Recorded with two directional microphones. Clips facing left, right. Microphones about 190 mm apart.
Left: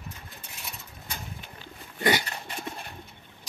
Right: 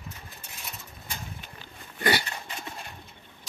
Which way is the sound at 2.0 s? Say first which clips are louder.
Left 1 dB; 15° left (ahead or behind).